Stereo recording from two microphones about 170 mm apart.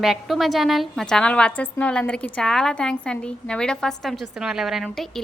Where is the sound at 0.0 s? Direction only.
Centre (ahead or behind).